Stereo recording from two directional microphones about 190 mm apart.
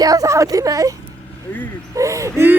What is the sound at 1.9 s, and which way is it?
Speech, 15° right (ahead or behind).